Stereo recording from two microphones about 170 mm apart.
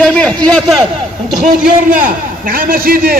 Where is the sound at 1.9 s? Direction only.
55° right (ahead or behind).